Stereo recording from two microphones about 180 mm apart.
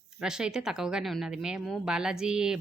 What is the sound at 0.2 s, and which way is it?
Speech, 5° right (ahead or behind).